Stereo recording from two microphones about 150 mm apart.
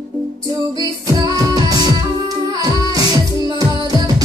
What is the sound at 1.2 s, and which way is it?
Music, 25° right (ahead or behind).